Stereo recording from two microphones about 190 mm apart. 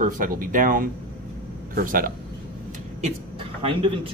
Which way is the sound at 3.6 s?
30° right (ahead or behind).